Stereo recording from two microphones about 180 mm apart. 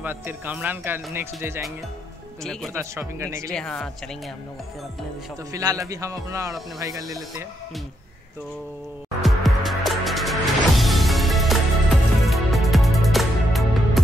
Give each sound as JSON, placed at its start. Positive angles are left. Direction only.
{"t": 0.0, "sound": "speech", "side_deg": -10}
{"t": 2.7, "sound": "speech", "side_deg": -15}
{"t": 3.5, "sound": "a woman's voice", "side_deg": 5}
{"t": 5.5, "sound": "speech", "side_deg": -20}
{"t": 9.2, "sound": "music", "side_deg": 0}